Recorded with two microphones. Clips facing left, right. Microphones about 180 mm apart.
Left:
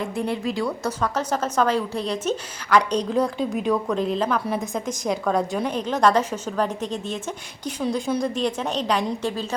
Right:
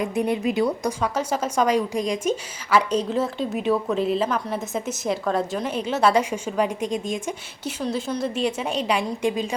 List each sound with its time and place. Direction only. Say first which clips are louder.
0.0 s a woman's voice: right 3 dB; 20° right (ahead or behind)